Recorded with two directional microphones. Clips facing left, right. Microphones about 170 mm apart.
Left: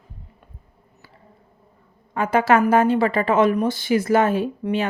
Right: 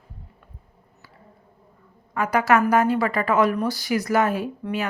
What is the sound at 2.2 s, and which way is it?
Speech, 25° left (ahead or behind).